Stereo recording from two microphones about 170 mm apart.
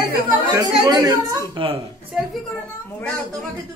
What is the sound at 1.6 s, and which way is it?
Speech, 30° right (ahead or behind).